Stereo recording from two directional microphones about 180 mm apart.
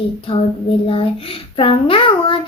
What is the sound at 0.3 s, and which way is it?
A child's voice, 30° left (ahead or behind).